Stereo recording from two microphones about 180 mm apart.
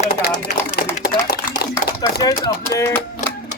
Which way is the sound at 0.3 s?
40° left (ahead or behind).